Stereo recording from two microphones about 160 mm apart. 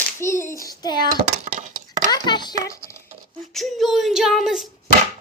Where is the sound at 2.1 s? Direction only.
25° left (ahead or behind).